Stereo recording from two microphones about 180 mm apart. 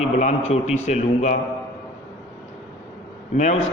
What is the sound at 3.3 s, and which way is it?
Speech, 40° left (ahead or behind).